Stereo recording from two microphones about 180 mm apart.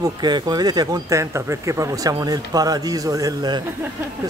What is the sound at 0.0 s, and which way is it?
Speech, 25° right (ahead or behind).